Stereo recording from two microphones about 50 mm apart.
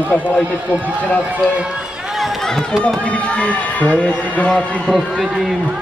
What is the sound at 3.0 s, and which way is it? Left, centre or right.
Speech, left.